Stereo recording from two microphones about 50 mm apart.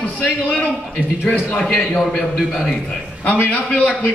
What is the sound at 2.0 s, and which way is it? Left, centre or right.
A man's voice, centre.